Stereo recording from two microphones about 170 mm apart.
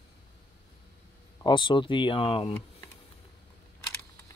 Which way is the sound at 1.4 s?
25° left (ahead or behind).